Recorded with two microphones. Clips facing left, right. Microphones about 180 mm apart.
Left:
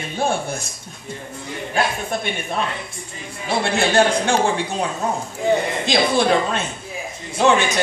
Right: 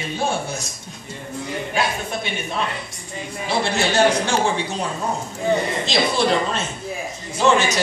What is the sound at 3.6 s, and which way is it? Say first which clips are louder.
Speech: left 1 dB; 55° left (ahead or behind).